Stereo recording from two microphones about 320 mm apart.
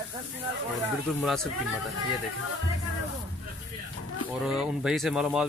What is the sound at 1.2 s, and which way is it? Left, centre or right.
Speech, centre.